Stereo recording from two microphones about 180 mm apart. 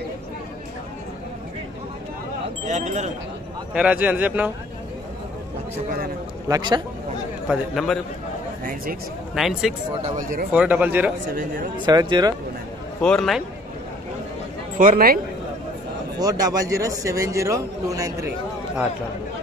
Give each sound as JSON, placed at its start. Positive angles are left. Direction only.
{"t": 2.6, "sound": "speech", "side_deg": -40}
{"t": 3.7, "sound": "a man's voice", "side_deg": -5}
{"t": 6.5, "sound": "a man's voice", "side_deg": -25}
{"t": 7.4, "sound": "a man's voice", "side_deg": 0}
{"t": 9.3, "sound": "a man's voice", "side_deg": 0}
{"t": 10.0, "sound": "speech", "side_deg": -45}
{"t": 10.5, "sound": "a man's voice", "side_deg": -10}
{"t": 11.8, "sound": "a man's voice", "side_deg": -25}
{"t": 13.0, "sound": "a man's voice", "side_deg": 0}
{"t": 14.8, "sound": "speech", "side_deg": -55}
{"t": 16.2, "sound": "a man's voice", "side_deg": -20}